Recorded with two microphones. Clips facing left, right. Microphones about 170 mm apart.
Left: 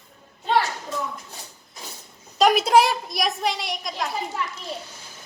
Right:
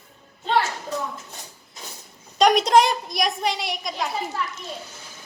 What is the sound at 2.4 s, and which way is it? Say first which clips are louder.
A woman's voice: even; 5° left (ahead or behind).